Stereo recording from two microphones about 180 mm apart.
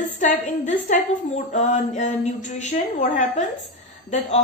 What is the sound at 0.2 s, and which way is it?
A woman's voice, 40° left (ahead or behind).